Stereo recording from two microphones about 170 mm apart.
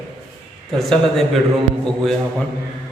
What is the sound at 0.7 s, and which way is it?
Mantra, centre (ahead or behind).